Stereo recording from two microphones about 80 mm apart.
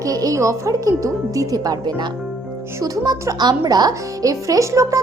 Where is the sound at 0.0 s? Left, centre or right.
Right.